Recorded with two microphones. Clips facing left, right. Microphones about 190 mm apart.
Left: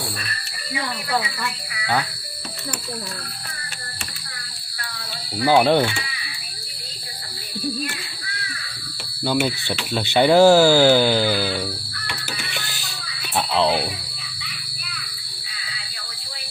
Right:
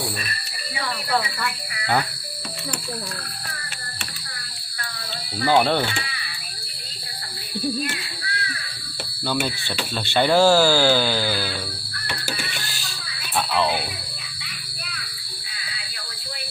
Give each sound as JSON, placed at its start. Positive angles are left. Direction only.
{"t": 5.4, "sound": "speech", "side_deg": 10}
{"t": 9.2, "sound": "speech", "side_deg": 15}
{"t": 12.5, "sound": "a sound", "side_deg": 20}
{"t": 13.3, "sound": "music", "side_deg": 20}